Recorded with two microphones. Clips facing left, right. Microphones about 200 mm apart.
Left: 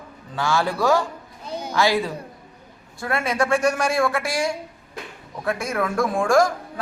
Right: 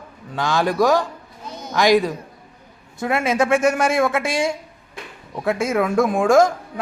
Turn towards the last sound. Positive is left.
turn(degrees=-20)  # may be behind; listen again after turning